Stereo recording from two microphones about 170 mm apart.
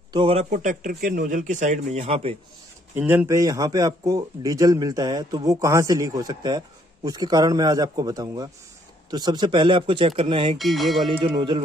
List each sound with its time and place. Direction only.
0.1 s a man's voice: 35° right (ahead or behind)
2.9 s speech: 10° right (ahead or behind); by 10.6 s 35° right (ahead or behind)
10.6 s speech: centre (ahead or behind)
11.1 s speech: 30° right (ahead or behind)